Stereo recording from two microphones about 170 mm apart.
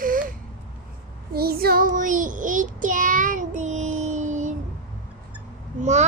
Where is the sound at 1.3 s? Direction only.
65° right (ahead or behind); by 4.6 s 45° right (ahead or behind).